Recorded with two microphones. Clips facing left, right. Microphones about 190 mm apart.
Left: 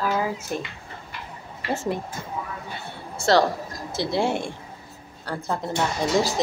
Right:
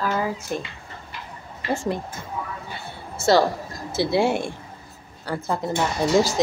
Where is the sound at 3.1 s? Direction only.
5° right (ahead or behind).